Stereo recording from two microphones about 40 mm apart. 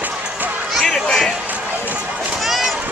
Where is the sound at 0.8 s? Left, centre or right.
Centre.